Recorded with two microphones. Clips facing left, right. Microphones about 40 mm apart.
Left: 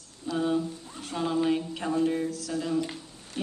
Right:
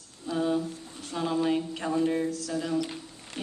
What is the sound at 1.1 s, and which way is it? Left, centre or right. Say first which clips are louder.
Speech: even; centre.